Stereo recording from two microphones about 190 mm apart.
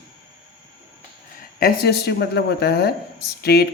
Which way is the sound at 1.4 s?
50° left (ahead or behind).